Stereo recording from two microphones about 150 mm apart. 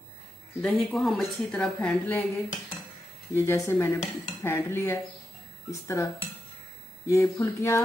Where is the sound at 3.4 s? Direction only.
15° left (ahead or behind).